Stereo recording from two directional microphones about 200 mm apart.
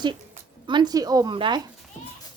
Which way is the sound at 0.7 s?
20° right (ahead or behind).